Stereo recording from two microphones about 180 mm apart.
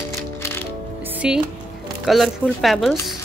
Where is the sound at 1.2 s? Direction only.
5° right (ahead or behind).